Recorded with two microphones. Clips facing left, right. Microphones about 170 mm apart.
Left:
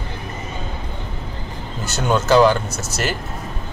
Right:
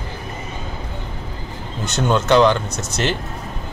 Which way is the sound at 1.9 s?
5° left (ahead or behind).